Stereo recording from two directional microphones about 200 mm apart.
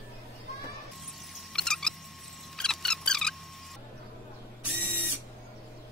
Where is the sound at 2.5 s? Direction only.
5° left (ahead or behind).